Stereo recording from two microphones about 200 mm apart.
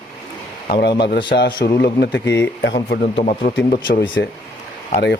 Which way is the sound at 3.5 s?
55° left (ahead or behind).